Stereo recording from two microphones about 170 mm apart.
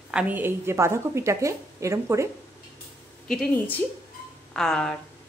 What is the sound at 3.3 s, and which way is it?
A woman's voice, 5° left (ahead or behind).